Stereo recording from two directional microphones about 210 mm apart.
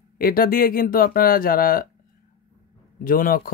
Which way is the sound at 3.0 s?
40° left (ahead or behind).